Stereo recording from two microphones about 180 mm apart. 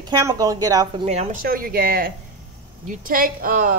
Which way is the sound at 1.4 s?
55° right (ahead or behind).